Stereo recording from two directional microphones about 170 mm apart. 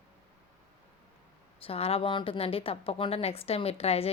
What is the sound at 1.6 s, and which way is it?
A woman's voice, 35° left (ahead or behind).